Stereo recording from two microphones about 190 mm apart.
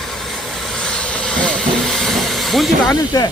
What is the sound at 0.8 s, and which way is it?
Vehicle, 5° left (ahead or behind).